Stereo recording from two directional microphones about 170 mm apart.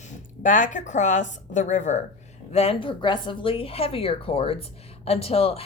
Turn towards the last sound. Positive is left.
turn(degrees=35)  # may be behind; listen again after turning